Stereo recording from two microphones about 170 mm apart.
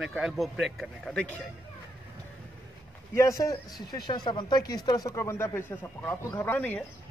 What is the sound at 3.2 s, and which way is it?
A man's voice, 20° left (ahead or behind).